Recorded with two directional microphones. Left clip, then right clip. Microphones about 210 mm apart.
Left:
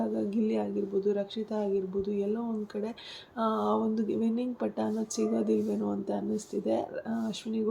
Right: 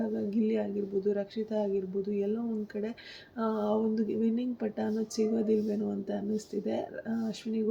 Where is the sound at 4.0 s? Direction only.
5° left (ahead or behind).